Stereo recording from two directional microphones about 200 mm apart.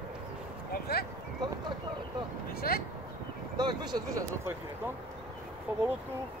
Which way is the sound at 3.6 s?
20° right (ahead or behind).